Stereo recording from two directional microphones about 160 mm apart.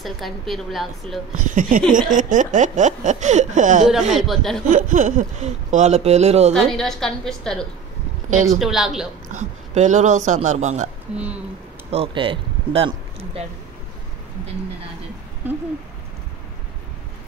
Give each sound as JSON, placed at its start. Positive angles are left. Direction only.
{"t": 0.0, "sound": "a woman's voice", "side_deg": 0}
{"t": 1.3, "sound": "speech", "side_deg": -55}
{"t": 4.1, "sound": "a woman's voice", "side_deg": 0}
{"t": 4.6, "sound": "speech", "side_deg": -55}
{"t": 6.5, "sound": "a woman's voice", "side_deg": 5}
{"t": 8.3, "sound": "speech", "side_deg": -50}
{"t": 8.5, "sound": "a woman's voice", "side_deg": 0}
{"t": 9.3, "sound": "speech", "side_deg": -50}
{"t": 11.9, "sound": "speech", "side_deg": -35}